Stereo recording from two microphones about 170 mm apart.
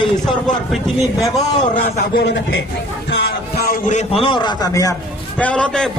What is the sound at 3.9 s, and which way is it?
A man's voice, 40° left (ahead or behind).